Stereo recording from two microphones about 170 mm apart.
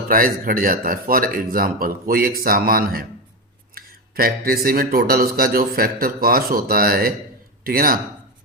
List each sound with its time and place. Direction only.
0.1 s speech: 55° right (ahead or behind)